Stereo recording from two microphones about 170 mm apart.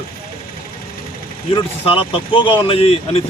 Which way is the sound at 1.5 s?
30° left (ahead or behind).